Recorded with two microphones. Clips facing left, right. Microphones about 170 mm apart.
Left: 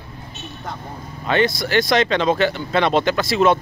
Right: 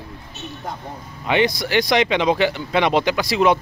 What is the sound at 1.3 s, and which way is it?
Speech, 15° right (ahead or behind).